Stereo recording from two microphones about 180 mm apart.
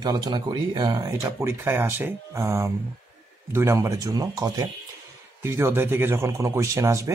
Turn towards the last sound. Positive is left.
turn(degrees=-15)  # may be behind; listen again after turning